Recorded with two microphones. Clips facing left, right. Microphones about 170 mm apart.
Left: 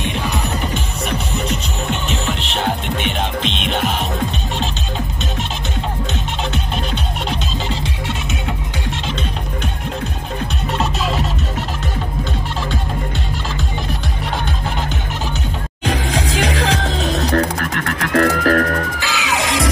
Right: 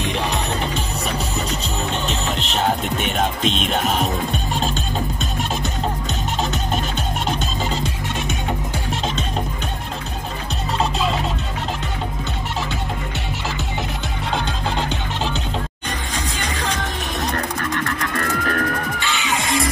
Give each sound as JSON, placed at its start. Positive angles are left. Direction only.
{"t": 1.9, "sound": "music", "side_deg": -35}
{"t": 15.8, "sound": "music", "side_deg": 90}